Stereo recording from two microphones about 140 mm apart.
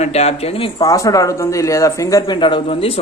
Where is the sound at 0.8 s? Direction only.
25° left (ahead or behind).